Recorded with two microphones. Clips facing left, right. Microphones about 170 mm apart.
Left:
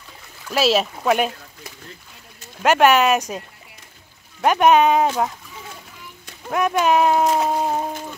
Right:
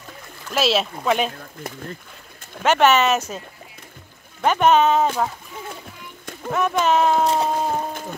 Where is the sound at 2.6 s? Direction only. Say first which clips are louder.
Left 1 dB; 10° left (ahead or behind).